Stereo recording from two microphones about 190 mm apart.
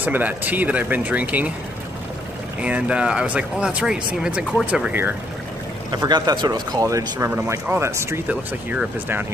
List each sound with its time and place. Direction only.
0.0 s speech: 10° right (ahead or behind)
2.6 s speech: 5° right (ahead or behind)
5.9 s speech: 20° right (ahead or behind)